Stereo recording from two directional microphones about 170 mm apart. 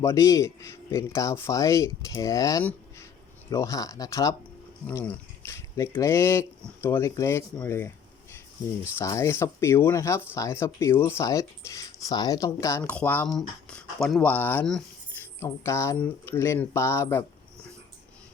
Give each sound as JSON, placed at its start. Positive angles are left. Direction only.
{"t": 0.0, "sound": "speech", "side_deg": 20}